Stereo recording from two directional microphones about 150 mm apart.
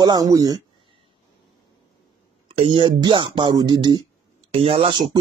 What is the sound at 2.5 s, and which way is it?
Speech, 40° right (ahead or behind).